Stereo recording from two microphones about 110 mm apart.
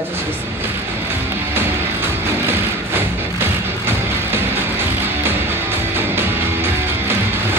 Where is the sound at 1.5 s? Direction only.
20° right (ahead or behind).